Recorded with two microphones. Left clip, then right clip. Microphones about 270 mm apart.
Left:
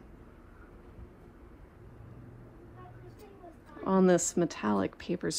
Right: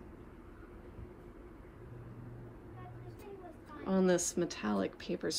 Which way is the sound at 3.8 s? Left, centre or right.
Left.